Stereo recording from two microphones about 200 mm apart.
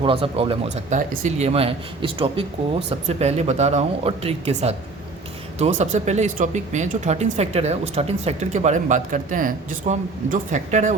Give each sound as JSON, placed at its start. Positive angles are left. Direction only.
{"t": 0.0, "sound": "speech", "side_deg": -25}